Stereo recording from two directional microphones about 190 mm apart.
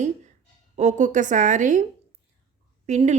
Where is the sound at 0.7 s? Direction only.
40° right (ahead or behind).